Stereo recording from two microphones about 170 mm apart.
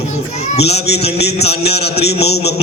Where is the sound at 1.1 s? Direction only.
75° left (ahead or behind).